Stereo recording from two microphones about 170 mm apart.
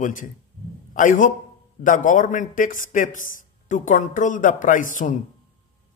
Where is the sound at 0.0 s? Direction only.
50° left (ahead or behind).